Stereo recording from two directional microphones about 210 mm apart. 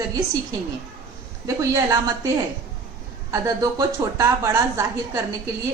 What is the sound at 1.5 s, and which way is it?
Speech, 15° right (ahead or behind).